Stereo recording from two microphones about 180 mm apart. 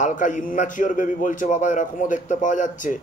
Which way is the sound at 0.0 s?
45° left (ahead or behind).